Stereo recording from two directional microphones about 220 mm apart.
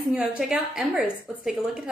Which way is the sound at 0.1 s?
5° right (ahead or behind).